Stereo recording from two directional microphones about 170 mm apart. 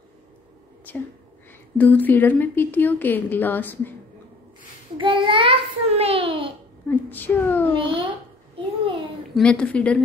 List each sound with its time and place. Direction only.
0.9 s a woman's voice: 10° left (ahead or behind)
4.9 s a child's voice: 30° right (ahead or behind)
6.9 s a woman's voice: 10° left (ahead or behind)
7.7 s a child's voice: 30° right (ahead or behind)
9.3 s a woman's voice: 5° left (ahead or behind)